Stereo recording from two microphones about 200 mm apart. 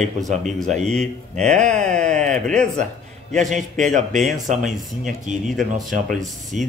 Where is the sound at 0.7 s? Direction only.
35° right (ahead or behind).